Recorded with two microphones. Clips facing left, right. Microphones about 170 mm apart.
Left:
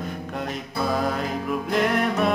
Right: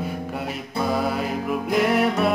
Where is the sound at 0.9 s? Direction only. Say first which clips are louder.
Right 1 dB; 10° right (ahead or behind).